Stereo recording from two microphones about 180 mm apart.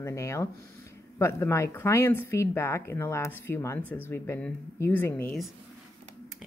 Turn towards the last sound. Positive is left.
turn(degrees=10)  # may be behind; listen again after turning